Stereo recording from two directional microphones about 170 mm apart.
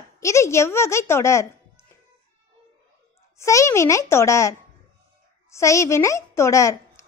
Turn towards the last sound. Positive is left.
turn(degrees=20)  # may be behind; listen again after turning